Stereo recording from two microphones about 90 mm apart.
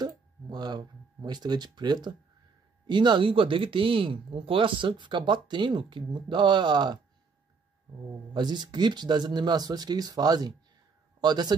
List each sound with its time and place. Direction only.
0.5 s speech: 50° right (ahead or behind)
8.3 s a man's voice: 55° right (ahead or behind)